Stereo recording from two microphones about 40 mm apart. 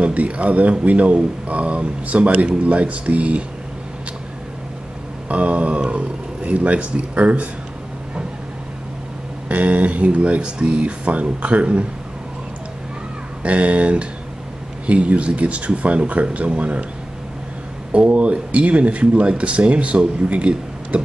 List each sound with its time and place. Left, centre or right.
0.0 s speech: right
5.3 s speech: right
9.5 s speech: right
13.4 s speech: right
17.9 s speech: right